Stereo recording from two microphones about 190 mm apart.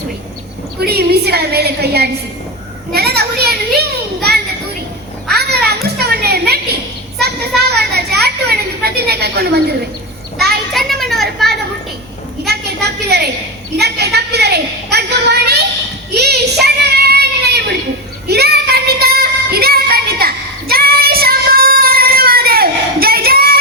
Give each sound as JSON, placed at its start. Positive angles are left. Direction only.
{"t": 0.8, "sound": "a woman's voice", "side_deg": -55}
{"t": 2.9, "sound": "children playing", "side_deg": -55}
{"t": 5.3, "sound": "children playing", "side_deg": -55}
{"t": 8.8, "sound": "a sound", "side_deg": -55}
{"t": 10.3, "sound": "child singing", "side_deg": -55}
{"t": 10.7, "sound": "a sound", "side_deg": 0}
{"t": 12.5, "sound": "a sound", "side_deg": -60}
{"t": 16.1, "sound": "child singing", "side_deg": -60}
{"t": 18.3, "sound": "music", "side_deg": -55}